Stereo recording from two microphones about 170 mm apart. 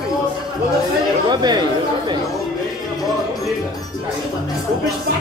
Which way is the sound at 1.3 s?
25° right (ahead or behind).